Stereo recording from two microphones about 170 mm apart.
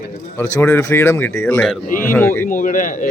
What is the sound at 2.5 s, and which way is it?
Speech, 50° left (ahead or behind).